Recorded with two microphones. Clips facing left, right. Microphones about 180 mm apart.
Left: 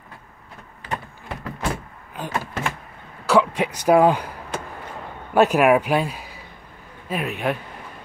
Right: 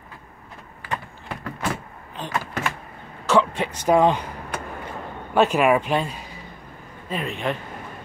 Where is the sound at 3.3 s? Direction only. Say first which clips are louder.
Left 1 dB; 10° left (ahead or behind).